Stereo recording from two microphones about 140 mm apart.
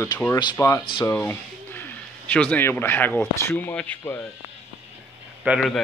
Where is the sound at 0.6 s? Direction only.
25° left (ahead or behind).